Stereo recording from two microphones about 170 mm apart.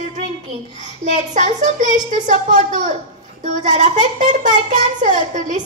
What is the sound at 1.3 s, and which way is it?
A child's voice, 45° right (ahead or behind).